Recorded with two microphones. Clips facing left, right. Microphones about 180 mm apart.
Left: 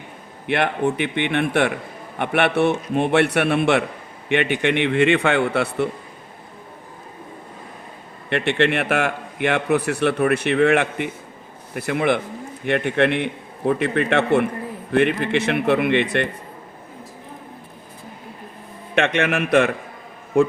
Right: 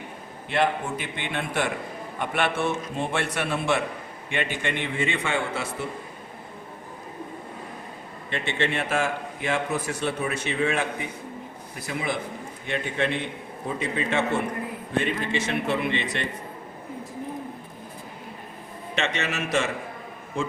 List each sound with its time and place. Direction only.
0.4 s a man's voice: 65° left (ahead or behind)
8.3 s a man's voice: 65° left (ahead or behind)
18.9 s a man's voice: 55° left (ahead or behind)